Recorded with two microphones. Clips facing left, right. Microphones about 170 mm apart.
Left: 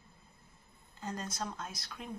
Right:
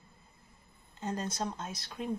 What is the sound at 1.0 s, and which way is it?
A woman's voice, 25° right (ahead or behind).